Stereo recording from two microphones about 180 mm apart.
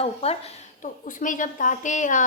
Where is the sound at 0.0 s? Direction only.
35° left (ahead or behind).